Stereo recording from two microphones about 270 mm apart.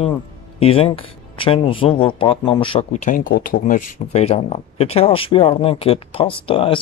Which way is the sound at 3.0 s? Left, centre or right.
Left.